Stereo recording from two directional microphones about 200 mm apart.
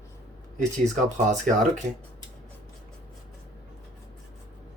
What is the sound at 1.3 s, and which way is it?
Speech, 40° right (ahead or behind).